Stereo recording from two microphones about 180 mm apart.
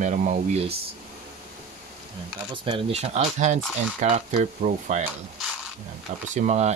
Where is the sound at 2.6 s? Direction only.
35° right (ahead or behind).